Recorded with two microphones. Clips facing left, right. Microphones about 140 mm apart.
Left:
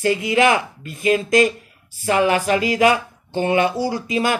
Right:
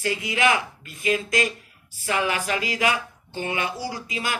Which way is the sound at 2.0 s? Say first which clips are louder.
Left 8 dB; 40° left (ahead or behind).